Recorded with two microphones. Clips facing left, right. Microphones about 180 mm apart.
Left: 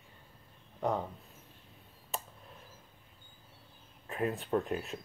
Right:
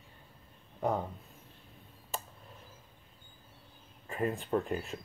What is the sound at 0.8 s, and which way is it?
Speech, centre (ahead or behind).